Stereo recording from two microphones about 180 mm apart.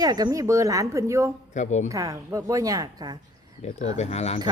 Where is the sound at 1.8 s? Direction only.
20° right (ahead or behind).